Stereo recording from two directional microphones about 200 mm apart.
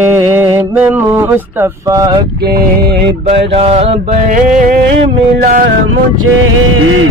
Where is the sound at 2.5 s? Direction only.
55° right (ahead or behind).